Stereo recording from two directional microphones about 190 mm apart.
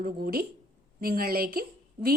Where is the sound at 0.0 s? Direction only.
55° right (ahead or behind).